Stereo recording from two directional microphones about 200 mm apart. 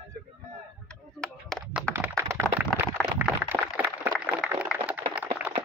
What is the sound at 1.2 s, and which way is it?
Speech, centre (ahead or behind).